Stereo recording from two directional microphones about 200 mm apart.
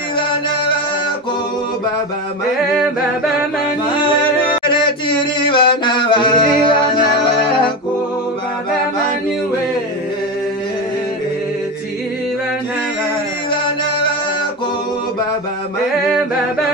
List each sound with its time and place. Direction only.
4.8 s mantra: 25° left (ahead or behind)
13.5 s music: 25° left (ahead or behind)